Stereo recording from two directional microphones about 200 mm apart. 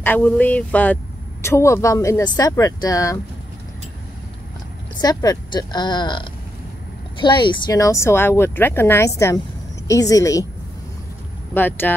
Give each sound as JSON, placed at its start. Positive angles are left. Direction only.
{"t": 0.0, "sound": "speech", "side_deg": 10}
{"t": 5.0, "sound": "speech", "side_deg": 20}
{"t": 11.5, "sound": "speech", "side_deg": 10}